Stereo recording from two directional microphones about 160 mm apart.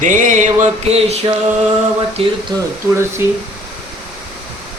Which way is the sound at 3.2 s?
15° right (ahead or behind).